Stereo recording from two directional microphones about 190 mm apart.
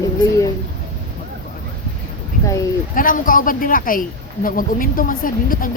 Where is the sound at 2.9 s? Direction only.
45° left (ahead or behind).